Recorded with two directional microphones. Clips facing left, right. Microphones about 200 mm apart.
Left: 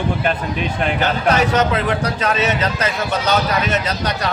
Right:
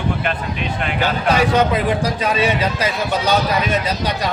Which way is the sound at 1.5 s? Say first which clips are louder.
Right 1 dB; 15° right (ahead or behind).